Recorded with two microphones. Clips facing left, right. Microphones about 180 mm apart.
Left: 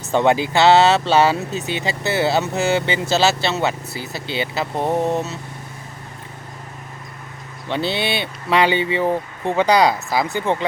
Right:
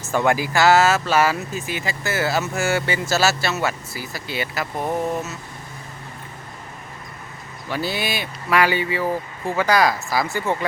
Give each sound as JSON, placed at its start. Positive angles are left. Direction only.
{"t": 0.1, "sound": "speech", "side_deg": 20}
{"t": 7.7, "sound": "speech", "side_deg": 25}